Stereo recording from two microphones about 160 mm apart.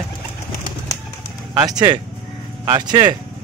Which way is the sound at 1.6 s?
20° right (ahead or behind).